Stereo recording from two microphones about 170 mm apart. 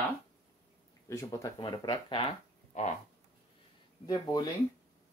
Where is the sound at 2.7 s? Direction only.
45° left (ahead or behind).